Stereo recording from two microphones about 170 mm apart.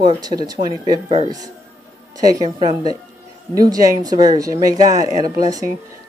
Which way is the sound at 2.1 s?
20° right (ahead or behind).